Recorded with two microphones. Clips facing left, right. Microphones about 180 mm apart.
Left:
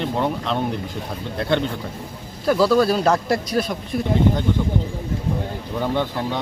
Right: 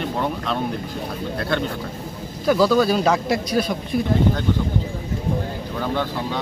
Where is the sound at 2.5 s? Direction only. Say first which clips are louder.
Even; centre (ahead or behind).